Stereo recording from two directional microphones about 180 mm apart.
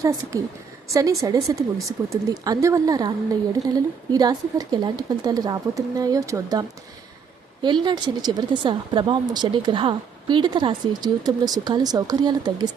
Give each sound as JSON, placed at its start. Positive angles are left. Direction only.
{"t": 0.0, "sound": "speech", "side_deg": -20}